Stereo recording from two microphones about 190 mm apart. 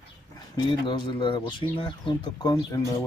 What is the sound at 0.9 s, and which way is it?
Speech, 25° left (ahead or behind).